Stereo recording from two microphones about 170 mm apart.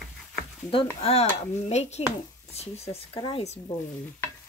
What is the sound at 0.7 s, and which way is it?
Speech, 35° left (ahead or behind).